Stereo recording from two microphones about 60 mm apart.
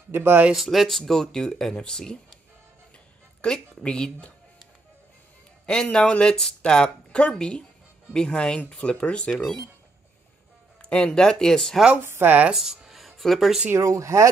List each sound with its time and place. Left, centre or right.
0.1 s speech: right
0.5 s speech: centre
3.4 s speech: centre
5.7 s speech: centre
10.8 s speech: centre
12.1 s speech: right
12.5 s music: centre
13.7 s speech: right